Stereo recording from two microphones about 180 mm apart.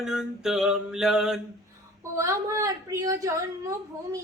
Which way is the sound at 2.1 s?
15° right (ahead or behind).